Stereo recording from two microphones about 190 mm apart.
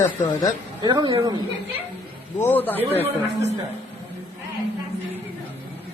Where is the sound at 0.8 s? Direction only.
20° right (ahead or behind).